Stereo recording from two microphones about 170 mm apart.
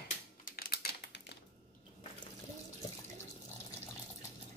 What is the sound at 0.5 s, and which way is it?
Typing, 60° left (ahead or behind).